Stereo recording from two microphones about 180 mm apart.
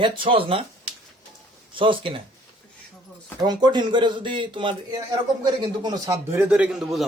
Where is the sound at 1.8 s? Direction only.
30° right (ahead or behind).